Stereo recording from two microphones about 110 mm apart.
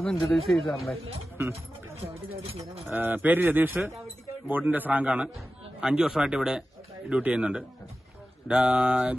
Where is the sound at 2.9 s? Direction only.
15° right (ahead or behind).